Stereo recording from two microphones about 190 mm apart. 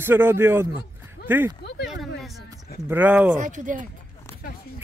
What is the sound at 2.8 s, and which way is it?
Speech, 10° right (ahead or behind).